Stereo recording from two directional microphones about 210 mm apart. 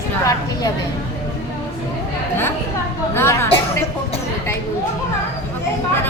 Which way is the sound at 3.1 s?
10° left (ahead or behind).